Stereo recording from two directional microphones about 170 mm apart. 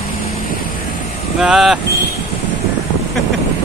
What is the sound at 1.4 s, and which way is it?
Speech, 5° right (ahead or behind).